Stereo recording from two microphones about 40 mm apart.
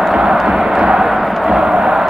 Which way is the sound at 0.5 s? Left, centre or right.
Centre.